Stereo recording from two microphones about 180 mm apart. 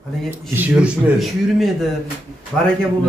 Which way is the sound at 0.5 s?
5° right (ahead or behind).